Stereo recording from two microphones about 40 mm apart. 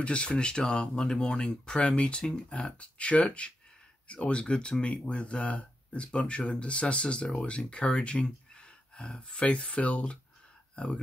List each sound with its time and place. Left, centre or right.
0.0 s speech: left